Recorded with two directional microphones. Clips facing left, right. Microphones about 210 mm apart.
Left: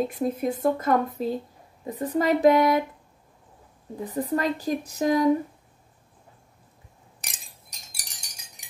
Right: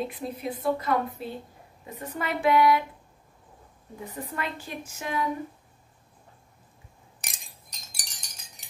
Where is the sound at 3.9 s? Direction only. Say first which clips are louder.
Left 9 dB; 35° left (ahead or behind).